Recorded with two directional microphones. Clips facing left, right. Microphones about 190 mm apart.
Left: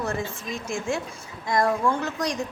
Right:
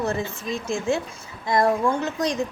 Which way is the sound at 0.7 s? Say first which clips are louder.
Right 4 dB; 25° right (ahead or behind).